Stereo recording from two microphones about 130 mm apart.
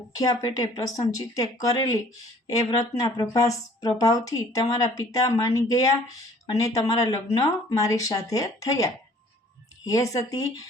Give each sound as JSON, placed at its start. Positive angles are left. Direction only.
{"t": 0.2, "sound": "speech", "side_deg": 25}